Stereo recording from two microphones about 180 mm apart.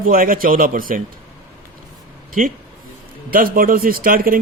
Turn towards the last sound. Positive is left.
turn(degrees=-50)  # may be behind; listen again after turning